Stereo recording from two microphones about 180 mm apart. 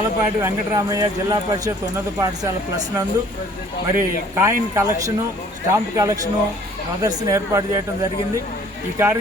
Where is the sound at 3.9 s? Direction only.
15° right (ahead or behind).